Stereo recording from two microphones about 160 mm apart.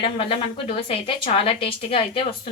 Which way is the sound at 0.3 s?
35° left (ahead or behind).